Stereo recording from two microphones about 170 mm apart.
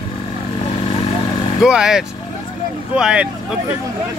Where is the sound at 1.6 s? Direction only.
5° right (ahead or behind).